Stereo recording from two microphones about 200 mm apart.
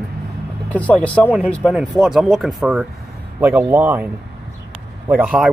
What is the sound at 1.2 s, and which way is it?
Speech, 5° right (ahead or behind).